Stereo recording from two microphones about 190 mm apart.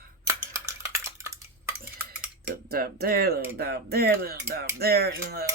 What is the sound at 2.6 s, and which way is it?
Speech, 50° right (ahead or behind).